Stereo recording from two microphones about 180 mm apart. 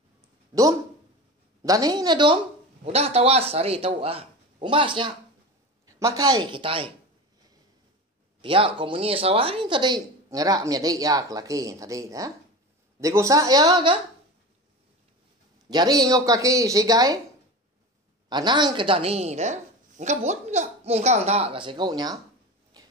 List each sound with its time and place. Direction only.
1.6 s speech: 20° right (ahead or behind)
5.9 s speech: 15° right (ahead or behind)
8.4 s speech: 30° right (ahead or behind)
15.7 s speech: 20° right (ahead or behind)
18.3 s a woman's voice: 25° right (ahead or behind)
22.8 s a sound: 20° right (ahead or behind)